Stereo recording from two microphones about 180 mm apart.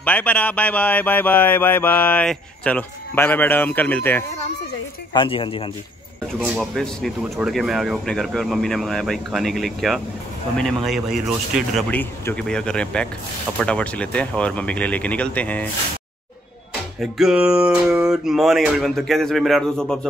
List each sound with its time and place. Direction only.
0.0 s speech: 10° left (ahead or behind)
5.1 s speech: 30° left (ahead or behind)
6.4 s speech: centre (ahead or behind)
11.9 s speech: 10° left (ahead or behind)
17.0 s speech: 5° right (ahead or behind)